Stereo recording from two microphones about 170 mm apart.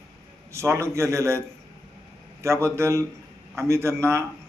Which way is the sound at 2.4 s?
15° right (ahead or behind).